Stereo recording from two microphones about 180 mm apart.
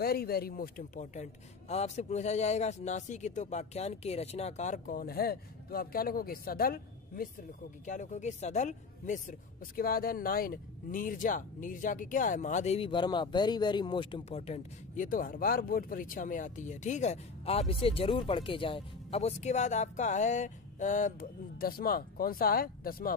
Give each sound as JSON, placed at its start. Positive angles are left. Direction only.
{"t": 0.0, "sound": "a man's voice", "side_deg": 60}
{"t": 7.8, "sound": "speech", "side_deg": 45}